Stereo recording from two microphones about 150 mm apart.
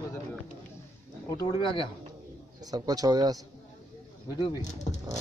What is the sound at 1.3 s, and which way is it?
Speech, 35° left (ahead or behind).